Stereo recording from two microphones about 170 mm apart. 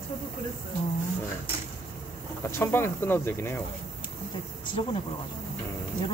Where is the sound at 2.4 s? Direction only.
15° left (ahead or behind).